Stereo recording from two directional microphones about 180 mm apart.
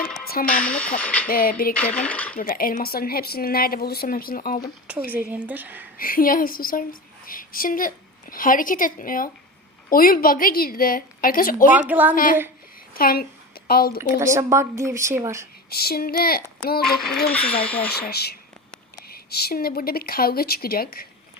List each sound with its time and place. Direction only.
0.6 s cutlery: 5° left (ahead or behind)
1.3 s a woman's voice: 55° left (ahead or behind)
1.7 s cutlery: 5° left (ahead or behind)
2.4 s a woman's voice: 50° left (ahead or behind)
5.1 s speech: 10° right (ahead or behind)
6.0 s a woman's voice: 50° left (ahead or behind)
11.7 s speech: 10° right (ahead or behind)
12.1 s a woman's voice: 50° left (ahead or behind)
14.0 s speech: 15° right (ahead or behind)
15.7 s a woman's voice: 60° left (ahead or behind)
16.8 s speech: centre (ahead or behind)
17.3 s cutlery: 10° left (ahead or behind)
18.1 s a woman's voice: 65° left (ahead or behind)